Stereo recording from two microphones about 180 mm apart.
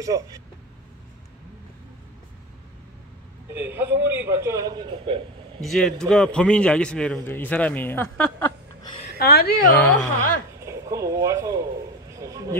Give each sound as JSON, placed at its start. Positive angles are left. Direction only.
{"t": 0.0, "sound": "speech", "side_deg": -20}
{"t": 3.5, "sound": "a man's voice", "side_deg": -10}
{"t": 5.6, "sound": "a man's voice", "side_deg": 0}
{"t": 9.2, "sound": "a woman's voice", "side_deg": 60}
{"t": 9.8, "sound": "speech", "side_deg": 10}
{"t": 10.6, "sound": "speech", "side_deg": -15}
{"t": 12.2, "sound": "a sound", "side_deg": -20}